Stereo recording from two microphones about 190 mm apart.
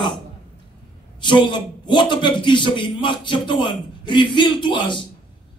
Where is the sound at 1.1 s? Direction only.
25° left (ahead or behind).